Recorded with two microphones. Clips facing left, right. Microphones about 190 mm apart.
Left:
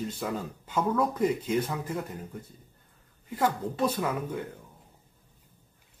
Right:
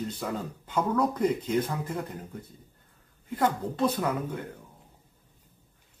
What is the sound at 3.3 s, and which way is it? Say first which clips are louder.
Speech: right 1 dB; 10° left (ahead or behind).